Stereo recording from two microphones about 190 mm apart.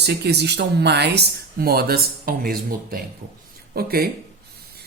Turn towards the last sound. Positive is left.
turn(degrees=-55)  # may be behind; listen again after turning